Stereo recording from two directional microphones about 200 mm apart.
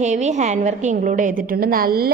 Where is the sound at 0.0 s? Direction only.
35° right (ahead or behind).